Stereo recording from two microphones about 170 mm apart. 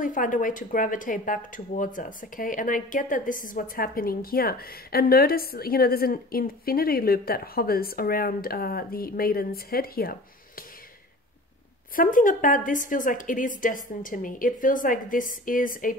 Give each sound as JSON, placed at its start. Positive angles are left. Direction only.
{"t": 0.0, "sound": "speech", "side_deg": 50}
{"t": 11.9, "sound": "a woman's voice", "side_deg": 55}